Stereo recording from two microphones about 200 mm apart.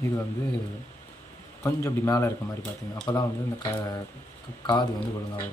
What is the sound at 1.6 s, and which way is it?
Speech, 15° left (ahead or behind).